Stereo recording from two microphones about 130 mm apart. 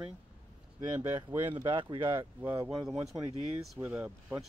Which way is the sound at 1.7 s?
35° right (ahead or behind).